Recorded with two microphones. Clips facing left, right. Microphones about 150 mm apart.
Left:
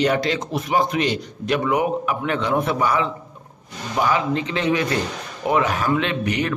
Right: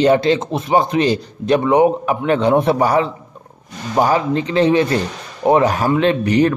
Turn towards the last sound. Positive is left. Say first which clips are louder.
# right 8 dB
turn(degrees=-35)  # may be behind; listen again after turning